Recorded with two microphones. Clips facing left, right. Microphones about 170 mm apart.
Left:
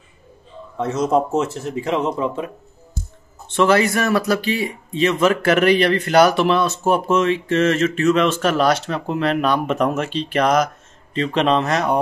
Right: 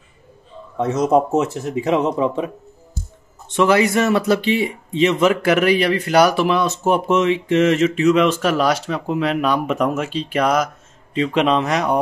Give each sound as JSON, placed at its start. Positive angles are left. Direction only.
{"t": 0.7, "sound": "a man's voice", "side_deg": -20}
{"t": 3.5, "sound": "speech", "side_deg": -15}